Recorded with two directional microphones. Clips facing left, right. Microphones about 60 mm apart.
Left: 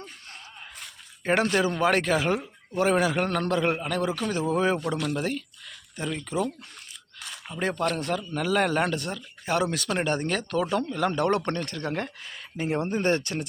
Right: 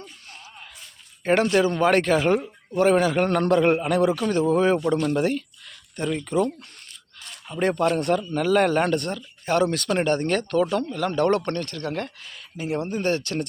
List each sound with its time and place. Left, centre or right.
1.2 s a man's voice: centre
7.5 s a man's voice: centre
10.7 s speech: centre
12.5 s speech: left